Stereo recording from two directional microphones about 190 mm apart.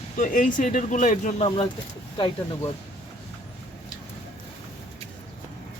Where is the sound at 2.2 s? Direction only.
25° left (ahead or behind).